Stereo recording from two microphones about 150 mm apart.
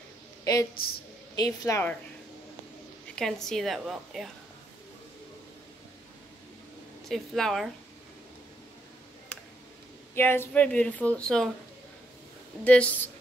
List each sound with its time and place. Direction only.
1.3 s a woman's voice: 25° left (ahead or behind)
3.2 s a woman's voice: 5° left (ahead or behind)
7.1 s a woman's voice: centre (ahead or behind)
10.1 s speech: 15° left (ahead or behind)
12.6 s speech: 10° left (ahead or behind)